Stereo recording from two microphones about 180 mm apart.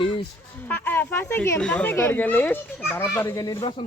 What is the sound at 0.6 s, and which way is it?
Speech, 10° left (ahead or behind).